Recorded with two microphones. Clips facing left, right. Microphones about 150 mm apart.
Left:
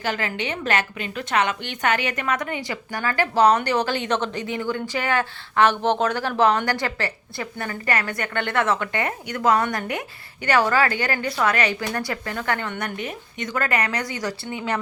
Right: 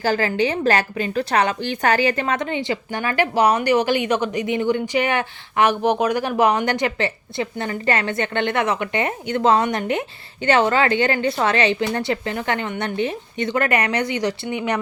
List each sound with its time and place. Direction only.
0.0 s a woman's voice: 35° right (ahead or behind); by 14.8 s 20° right (ahead or behind)